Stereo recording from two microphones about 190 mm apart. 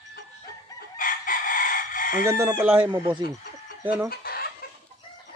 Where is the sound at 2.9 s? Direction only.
25° right (ahead or behind).